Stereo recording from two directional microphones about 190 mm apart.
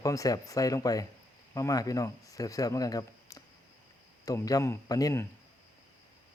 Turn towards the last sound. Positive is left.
turn(degrees=20)  # may be behind; listen again after turning